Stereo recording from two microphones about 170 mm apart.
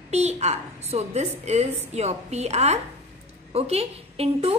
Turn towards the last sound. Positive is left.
turn(degrees=-35)  # may be behind; listen again after turning